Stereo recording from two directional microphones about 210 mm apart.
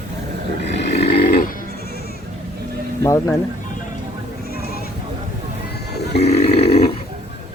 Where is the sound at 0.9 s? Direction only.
55° left (ahead or behind).